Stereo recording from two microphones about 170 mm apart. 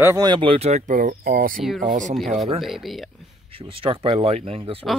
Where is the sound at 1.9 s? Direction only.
50° right (ahead or behind).